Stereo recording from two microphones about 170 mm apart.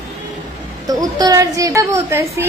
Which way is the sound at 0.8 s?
20° right (ahead or behind).